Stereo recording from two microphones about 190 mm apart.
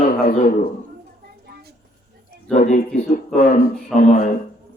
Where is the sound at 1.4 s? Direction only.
55° right (ahead or behind).